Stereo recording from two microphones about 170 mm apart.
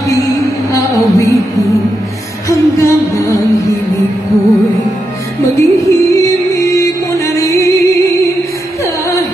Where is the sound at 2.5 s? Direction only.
20° left (ahead or behind).